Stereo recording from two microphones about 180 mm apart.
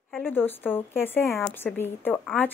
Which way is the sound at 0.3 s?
10° left (ahead or behind).